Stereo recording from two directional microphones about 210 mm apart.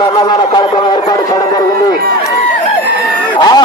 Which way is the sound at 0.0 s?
25° left (ahead or behind).